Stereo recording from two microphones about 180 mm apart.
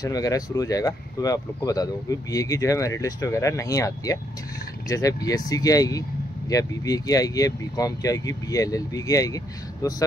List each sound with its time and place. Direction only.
0.0 s speech: 20° left (ahead or behind)